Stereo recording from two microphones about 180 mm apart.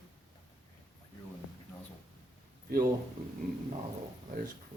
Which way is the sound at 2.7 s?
55° right (ahead or behind).